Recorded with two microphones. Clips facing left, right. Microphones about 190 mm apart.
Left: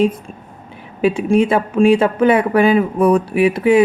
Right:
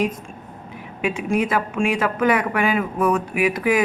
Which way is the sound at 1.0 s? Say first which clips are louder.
Left 8 dB; 30° left (ahead or behind).